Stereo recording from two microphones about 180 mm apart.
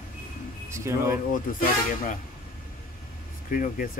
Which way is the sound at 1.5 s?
50° left (ahead or behind).